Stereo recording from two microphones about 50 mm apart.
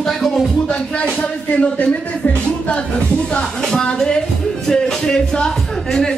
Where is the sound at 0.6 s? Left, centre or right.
Centre.